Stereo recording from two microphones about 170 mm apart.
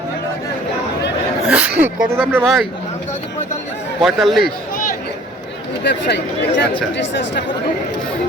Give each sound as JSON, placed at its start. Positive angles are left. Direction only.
{"t": 1.5, "sound": "speech", "side_deg": -10}
{"t": 4.0, "sound": "speech", "side_deg": 0}
{"t": 5.8, "sound": "speech", "side_deg": 80}